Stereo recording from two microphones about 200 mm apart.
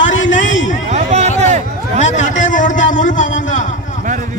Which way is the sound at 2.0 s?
35° left (ahead or behind).